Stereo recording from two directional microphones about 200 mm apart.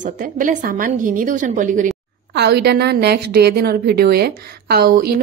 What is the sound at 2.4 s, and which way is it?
A woman's voice, 55° right (ahead or behind).